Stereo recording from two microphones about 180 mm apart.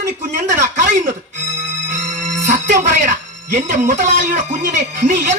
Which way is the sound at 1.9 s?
45° right (ahead or behind).